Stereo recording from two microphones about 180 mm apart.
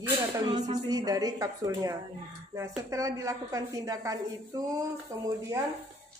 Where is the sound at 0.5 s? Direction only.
20° right (ahead or behind).